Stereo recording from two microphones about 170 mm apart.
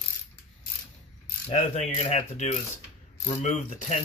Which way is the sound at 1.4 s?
40° left (ahead or behind).